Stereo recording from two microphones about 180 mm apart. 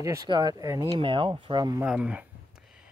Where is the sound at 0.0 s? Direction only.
20° right (ahead or behind).